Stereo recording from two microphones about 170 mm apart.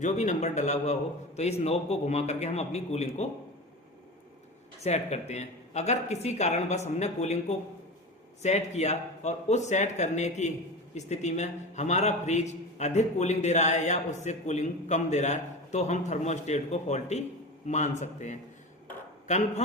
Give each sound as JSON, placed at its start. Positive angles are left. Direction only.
{"t": 0.0, "sound": "a man's voice", "side_deg": 45}
{"t": 4.8, "sound": "a man's voice", "side_deg": 40}